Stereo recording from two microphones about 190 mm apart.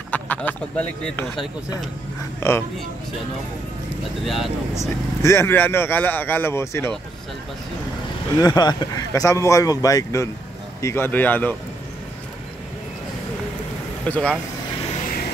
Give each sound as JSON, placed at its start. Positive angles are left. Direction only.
{"t": 0.1, "sound": "speech", "side_deg": 10}
{"t": 4.2, "sound": "speech", "side_deg": 0}
{"t": 5.2, "sound": "speech", "side_deg": 15}
{"t": 8.4, "sound": "speech", "side_deg": 20}
{"t": 14.0, "sound": "speech", "side_deg": 10}